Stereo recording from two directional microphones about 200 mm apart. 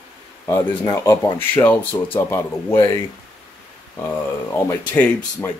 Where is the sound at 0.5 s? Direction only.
15° left (ahead or behind).